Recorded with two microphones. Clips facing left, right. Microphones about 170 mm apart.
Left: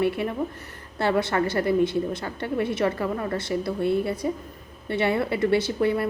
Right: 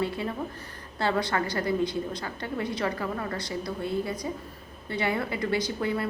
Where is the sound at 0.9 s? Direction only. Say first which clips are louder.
Left 4 dB; 25° left (ahead or behind).